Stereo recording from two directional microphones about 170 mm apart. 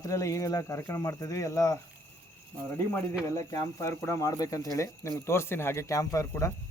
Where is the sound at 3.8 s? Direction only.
15° left (ahead or behind).